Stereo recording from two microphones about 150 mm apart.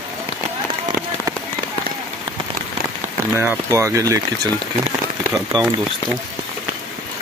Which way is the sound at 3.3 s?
15° right (ahead or behind).